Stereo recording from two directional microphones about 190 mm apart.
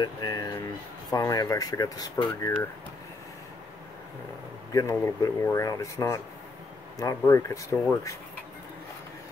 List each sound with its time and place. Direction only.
0.0 s a sound: 20° left (ahead or behind)
1.1 s speech: 20° left (ahead or behind)
4.7 s speech: 15° left (ahead or behind)
7.7 s speech: 5° left (ahead or behind)